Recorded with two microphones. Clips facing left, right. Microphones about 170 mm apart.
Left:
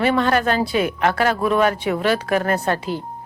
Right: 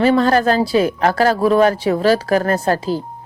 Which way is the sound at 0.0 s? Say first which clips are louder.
Right 4 dB; 35° right (ahead or behind).